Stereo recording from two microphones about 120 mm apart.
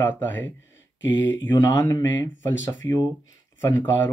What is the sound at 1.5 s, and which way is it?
Speech, 35° left (ahead or behind).